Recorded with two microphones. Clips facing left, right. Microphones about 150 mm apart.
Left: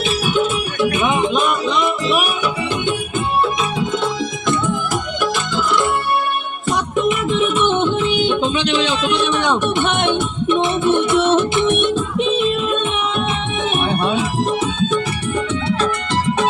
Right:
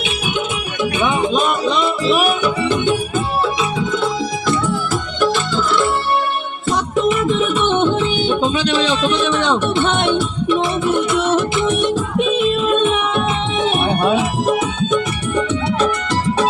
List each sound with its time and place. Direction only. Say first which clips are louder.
0.3 s music: left 4 dB; 20° right (ahead or behind)
2.1 s music: right 3 dB; 40° right (ahead or behind)
3.8 s music: right 1 dB; 25° left (ahead or behind)
7.1 s music: right 1 dB; 40° right (ahead or behind)
9.0 s music: right 1 dB; 15° left (ahead or behind)
13.6 s music: right 3 dB; 30° right (ahead or behind)